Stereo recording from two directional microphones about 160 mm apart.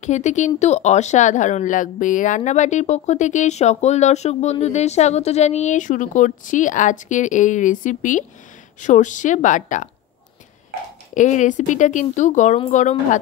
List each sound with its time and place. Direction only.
0.0 s speech: 45° left (ahead or behind)
11.1 s speech: 50° left (ahead or behind)